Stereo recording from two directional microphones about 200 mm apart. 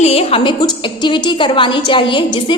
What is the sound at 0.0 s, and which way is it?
A woman's voice, 30° left (ahead or behind).